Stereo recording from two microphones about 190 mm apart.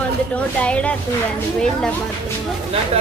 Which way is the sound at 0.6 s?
5° left (ahead or behind).